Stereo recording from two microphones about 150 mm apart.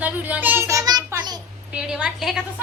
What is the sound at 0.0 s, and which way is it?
Child singing, 10° right (ahead or behind).